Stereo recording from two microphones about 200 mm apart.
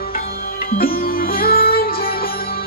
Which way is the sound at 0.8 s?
45° left (ahead or behind).